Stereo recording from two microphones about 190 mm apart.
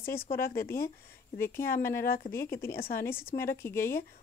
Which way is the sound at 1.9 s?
50° left (ahead or behind).